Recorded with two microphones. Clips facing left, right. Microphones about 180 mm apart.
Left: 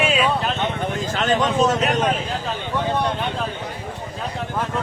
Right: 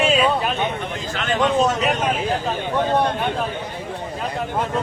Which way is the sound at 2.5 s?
55° right (ahead or behind).